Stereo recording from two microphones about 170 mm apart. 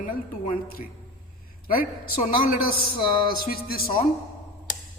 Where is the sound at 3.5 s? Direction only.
60° left (ahead or behind).